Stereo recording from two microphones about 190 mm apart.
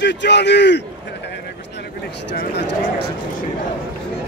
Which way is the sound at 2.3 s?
65° left (ahead or behind).